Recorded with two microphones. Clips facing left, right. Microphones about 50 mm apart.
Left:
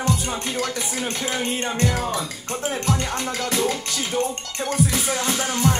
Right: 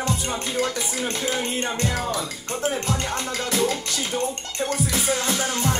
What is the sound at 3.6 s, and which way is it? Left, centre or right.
Music, centre.